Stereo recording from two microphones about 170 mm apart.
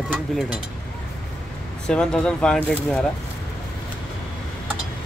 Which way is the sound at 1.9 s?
5° left (ahead or behind).